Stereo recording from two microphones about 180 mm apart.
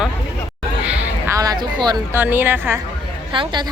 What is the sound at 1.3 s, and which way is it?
Speech, 20° right (ahead or behind).